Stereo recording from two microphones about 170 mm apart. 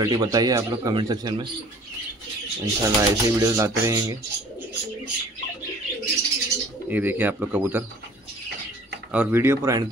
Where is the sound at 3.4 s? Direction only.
20° right (ahead or behind).